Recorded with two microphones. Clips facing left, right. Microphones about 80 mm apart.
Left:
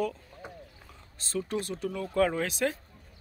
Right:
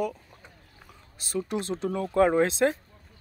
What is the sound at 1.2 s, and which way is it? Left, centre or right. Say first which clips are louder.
Speech: right 2 dB; centre.